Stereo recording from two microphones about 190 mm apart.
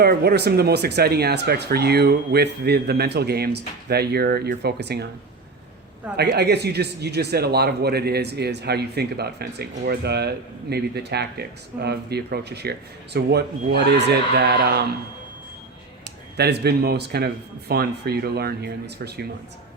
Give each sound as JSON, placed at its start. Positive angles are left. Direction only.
{"t": 0.0, "sound": "a man's voice", "side_deg": -55}
{"t": 6.1, "sound": "a man's voice", "side_deg": -60}
{"t": 16.4, "sound": "a man's voice", "side_deg": -60}